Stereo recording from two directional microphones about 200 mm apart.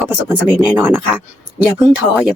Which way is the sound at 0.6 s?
5° right (ahead or behind).